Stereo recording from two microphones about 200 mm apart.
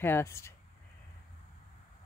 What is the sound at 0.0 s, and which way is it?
Speech, 10° left (ahead or behind).